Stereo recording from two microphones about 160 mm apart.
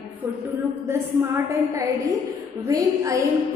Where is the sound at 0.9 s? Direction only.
15° right (ahead or behind).